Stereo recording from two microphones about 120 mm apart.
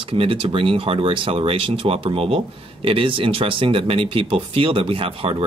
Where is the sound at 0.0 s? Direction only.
50° right (ahead or behind).